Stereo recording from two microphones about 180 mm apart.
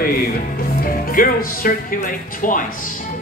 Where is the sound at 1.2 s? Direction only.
50° left (ahead or behind).